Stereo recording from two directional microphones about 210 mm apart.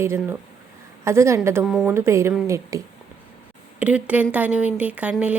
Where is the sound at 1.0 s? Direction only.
15° right (ahead or behind).